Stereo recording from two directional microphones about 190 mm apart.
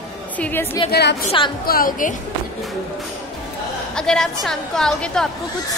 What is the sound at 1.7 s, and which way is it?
Speech, 45° left (ahead or behind).